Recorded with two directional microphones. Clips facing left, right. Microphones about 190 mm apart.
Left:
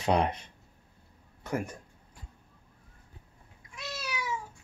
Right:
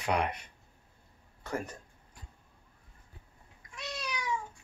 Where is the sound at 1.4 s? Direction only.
15° left (ahead or behind).